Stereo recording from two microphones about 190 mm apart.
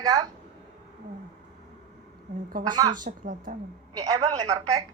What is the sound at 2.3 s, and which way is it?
A woman's voice, 50° right (ahead or behind).